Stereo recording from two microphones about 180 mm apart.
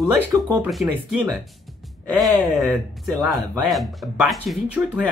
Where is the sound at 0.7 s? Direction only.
Centre (ahead or behind).